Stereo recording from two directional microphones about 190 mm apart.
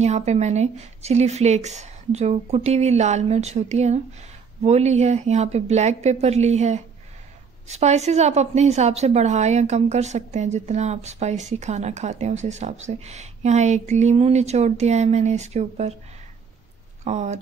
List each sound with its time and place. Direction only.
0.0 s a woman's voice: 35° right (ahead or behind)
17.0 s a woman's voice: 35° right (ahead or behind)